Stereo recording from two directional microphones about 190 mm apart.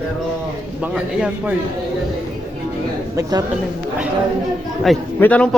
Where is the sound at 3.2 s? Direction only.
20° right (ahead or behind).